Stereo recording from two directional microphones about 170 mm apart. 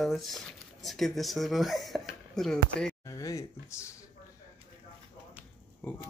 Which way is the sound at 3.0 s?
20° left (ahead or behind).